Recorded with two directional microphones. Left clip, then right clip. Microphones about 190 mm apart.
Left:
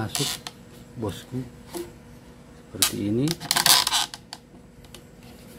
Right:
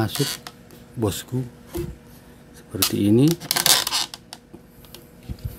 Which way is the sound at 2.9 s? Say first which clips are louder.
Right 8 dB; 60° right (ahead or behind).